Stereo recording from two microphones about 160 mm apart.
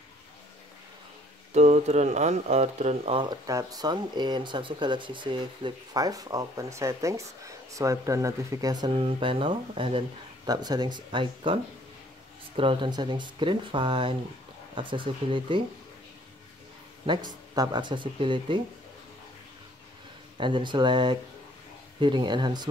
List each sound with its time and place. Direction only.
1.5 s speech: 45° right (ahead or behind)
3.2 s speech: 25° right (ahead or behind)
17.0 s speech: 30° right (ahead or behind)
20.3 s speech: 30° right (ahead or behind)